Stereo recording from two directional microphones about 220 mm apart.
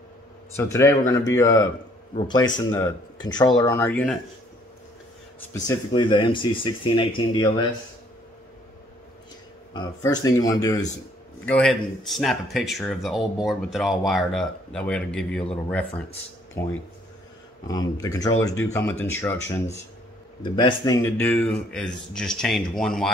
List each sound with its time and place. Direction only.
0.6 s speech: 15° left (ahead or behind)
5.5 s speech: 20° left (ahead or behind)
9.8 s speech: 15° left (ahead or behind)
11.4 s speech: 5° left (ahead or behind)
20.4 s speech: 20° left (ahead or behind); by 23.0 s centre (ahead or behind)